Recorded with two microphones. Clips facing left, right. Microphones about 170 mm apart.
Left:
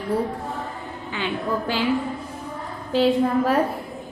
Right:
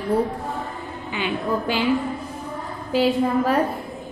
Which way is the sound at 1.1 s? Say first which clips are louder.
Right 1 dB; 15° right (ahead or behind).